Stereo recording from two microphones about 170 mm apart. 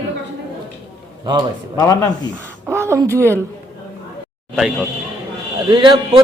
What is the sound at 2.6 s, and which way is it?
Speech, 15° right (ahead or behind).